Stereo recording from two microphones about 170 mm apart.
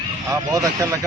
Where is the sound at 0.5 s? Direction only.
20° right (ahead or behind).